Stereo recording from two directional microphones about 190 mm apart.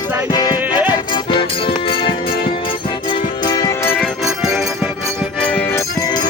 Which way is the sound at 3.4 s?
20° left (ahead or behind).